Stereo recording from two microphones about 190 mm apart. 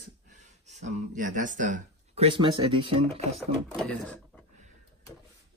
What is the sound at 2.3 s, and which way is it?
Speech, 25° right (ahead or behind).